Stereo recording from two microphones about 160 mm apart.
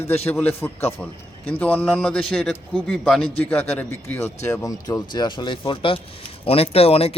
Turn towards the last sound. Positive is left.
turn(degrees=40)  # may be behind; listen again after turning